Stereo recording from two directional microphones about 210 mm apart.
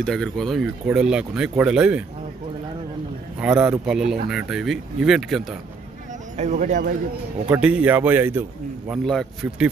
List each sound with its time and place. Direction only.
0.0 s speech: 5° left (ahead or behind)
3.3 s speech: 5° right (ahead or behind)
6.3 s speech: 35° right (ahead or behind)
7.4 s speech: 5° right (ahead or behind)
9.0 s speech: centre (ahead or behind)